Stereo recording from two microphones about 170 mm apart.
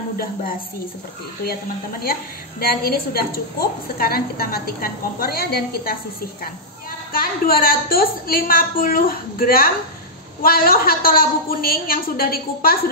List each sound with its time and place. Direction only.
2.6 s a woman's voice: 60° left (ahead or behind)
7.1 s a woman's voice: 60° left (ahead or behind)